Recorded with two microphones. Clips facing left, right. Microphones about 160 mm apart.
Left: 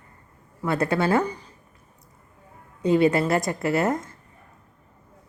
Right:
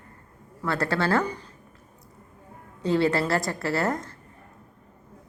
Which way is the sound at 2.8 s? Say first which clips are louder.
Left 4 dB; 20° left (ahead or behind).